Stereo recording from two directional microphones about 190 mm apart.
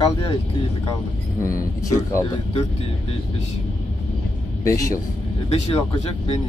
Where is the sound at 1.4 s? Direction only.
15° left (ahead or behind).